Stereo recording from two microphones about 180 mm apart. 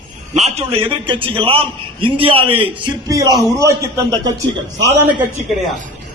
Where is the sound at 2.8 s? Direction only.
20° right (ahead or behind).